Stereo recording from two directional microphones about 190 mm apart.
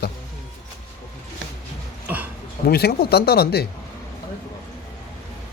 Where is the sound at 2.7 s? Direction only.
55° left (ahead or behind).